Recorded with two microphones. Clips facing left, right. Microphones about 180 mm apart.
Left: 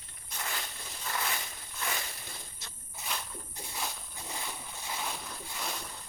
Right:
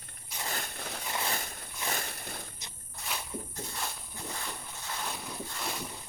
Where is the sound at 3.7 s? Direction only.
5° left (ahead or behind).